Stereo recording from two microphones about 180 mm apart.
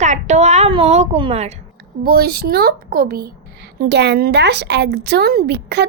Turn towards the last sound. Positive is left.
turn(degrees=-65)  # may be behind; listen again after turning